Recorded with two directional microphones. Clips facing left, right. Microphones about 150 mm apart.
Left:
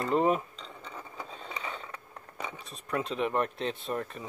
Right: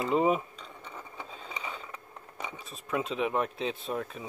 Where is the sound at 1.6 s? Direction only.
5° right (ahead or behind).